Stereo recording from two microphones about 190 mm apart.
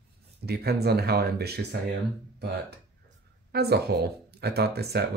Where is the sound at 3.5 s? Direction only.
55° right (ahead or behind).